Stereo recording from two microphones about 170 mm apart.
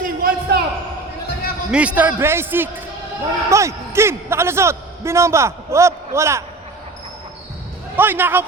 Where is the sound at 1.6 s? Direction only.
5° right (ahead or behind).